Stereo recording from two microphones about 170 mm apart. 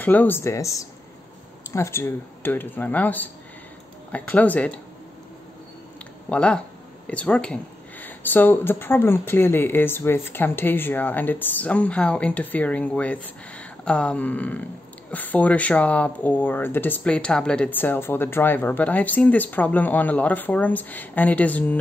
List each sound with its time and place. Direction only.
0.0 s speech: 10° left (ahead or behind)
6.2 s speech: 5° left (ahead or behind)